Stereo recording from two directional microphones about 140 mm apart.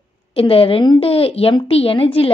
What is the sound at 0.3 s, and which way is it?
A woman's voice, 45° left (ahead or behind).